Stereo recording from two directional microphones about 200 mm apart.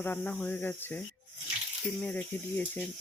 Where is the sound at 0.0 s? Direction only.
10° left (ahead or behind).